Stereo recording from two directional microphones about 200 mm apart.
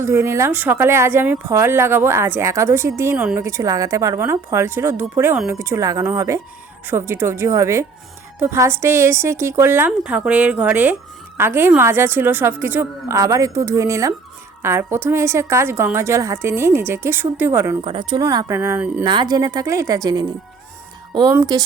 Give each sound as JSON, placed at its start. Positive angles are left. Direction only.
{"t": 0.0, "sound": "a woman's voice", "side_deg": -15}
{"t": 17.8, "sound": "a woman's voice", "side_deg": -20}
{"t": 19.0, "sound": "a woman's voice", "side_deg": -20}